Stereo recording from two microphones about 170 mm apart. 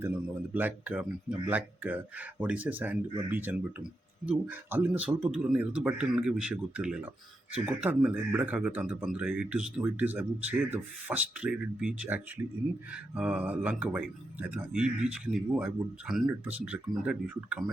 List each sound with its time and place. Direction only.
0.0 s speech: 10° right (ahead or behind)